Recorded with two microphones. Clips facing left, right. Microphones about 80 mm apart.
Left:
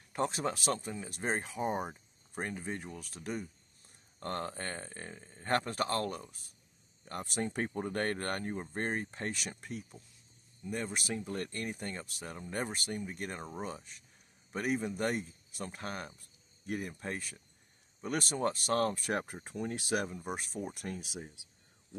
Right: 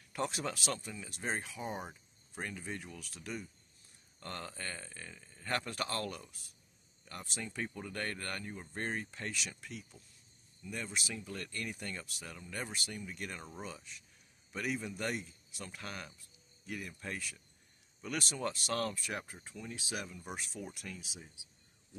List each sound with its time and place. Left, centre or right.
0.1 s speech: left
7.1 s speech: left
8.7 s speech: left
18.9 s speech: left
20.1 s speech: left